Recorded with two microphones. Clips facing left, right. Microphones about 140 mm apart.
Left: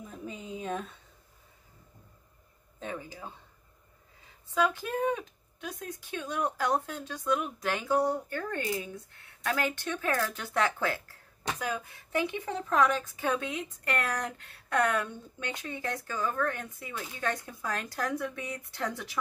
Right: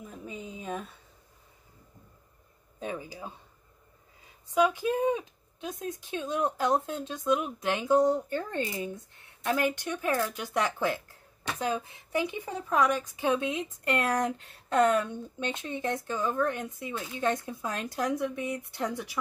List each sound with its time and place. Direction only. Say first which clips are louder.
0.2 s speech: left 3 dB; centre (ahead or behind)
2.8 s speech: right 3 dB; 15° right (ahead or behind)
4.6 s speech: right 3 dB; 15° right (ahead or behind)